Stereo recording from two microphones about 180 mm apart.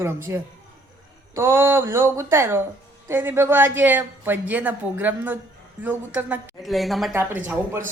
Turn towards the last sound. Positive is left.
turn(degrees=-10)  # may be behind; listen again after turning